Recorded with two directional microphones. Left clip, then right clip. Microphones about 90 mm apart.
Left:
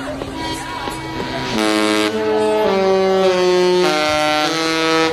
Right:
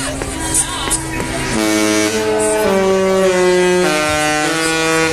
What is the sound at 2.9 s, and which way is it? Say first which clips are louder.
Music: right 1 dB; 40° left (ahead or behind).